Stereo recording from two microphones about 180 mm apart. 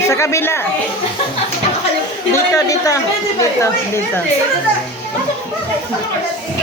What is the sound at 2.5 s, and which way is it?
Speech, 20° left (ahead or behind).